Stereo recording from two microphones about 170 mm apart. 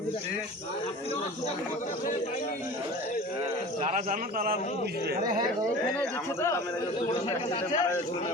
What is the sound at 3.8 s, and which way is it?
Speech, 50° right (ahead or behind).